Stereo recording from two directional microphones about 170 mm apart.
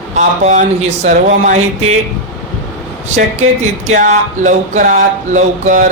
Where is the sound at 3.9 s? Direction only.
45° right (ahead or behind).